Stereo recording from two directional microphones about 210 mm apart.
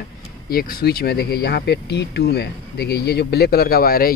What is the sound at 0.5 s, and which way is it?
Speech, 45° left (ahead or behind).